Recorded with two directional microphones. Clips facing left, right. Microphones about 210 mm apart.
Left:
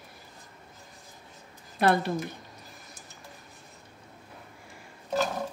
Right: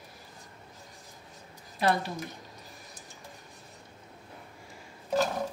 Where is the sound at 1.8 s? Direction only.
60° left (ahead or behind).